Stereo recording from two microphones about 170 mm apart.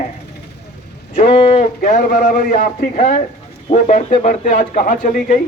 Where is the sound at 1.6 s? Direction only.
50° left (ahead or behind).